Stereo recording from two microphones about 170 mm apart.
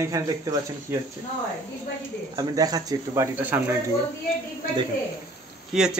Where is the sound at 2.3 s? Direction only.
20° right (ahead or behind).